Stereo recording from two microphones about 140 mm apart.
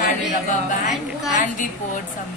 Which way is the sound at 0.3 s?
65° left (ahead or behind).